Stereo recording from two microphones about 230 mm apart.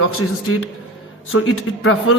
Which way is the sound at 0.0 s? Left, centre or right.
Left.